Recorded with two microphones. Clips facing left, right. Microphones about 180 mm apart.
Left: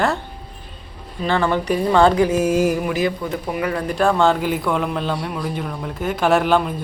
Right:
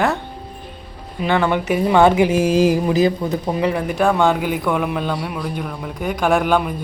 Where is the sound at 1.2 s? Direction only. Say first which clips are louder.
Right 1 dB; 15° right (ahead or behind); by 3.3 s 35° right (ahead or behind).